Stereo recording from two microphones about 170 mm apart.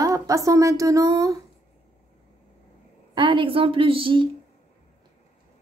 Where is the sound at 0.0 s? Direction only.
20° right (ahead or behind).